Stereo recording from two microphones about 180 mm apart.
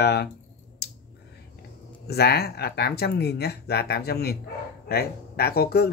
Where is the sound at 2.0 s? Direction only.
60° left (ahead or behind).